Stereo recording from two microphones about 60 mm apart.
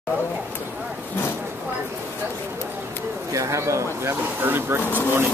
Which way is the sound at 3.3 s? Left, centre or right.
Right.